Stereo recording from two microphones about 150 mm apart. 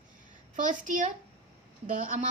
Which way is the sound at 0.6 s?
60° right (ahead or behind).